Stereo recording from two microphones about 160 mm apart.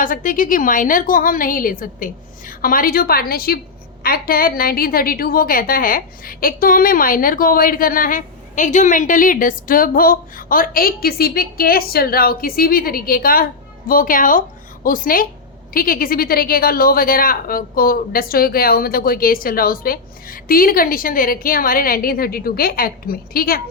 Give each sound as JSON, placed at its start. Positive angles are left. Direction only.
{"t": 0.0, "sound": "a woman's voice", "side_deg": 55}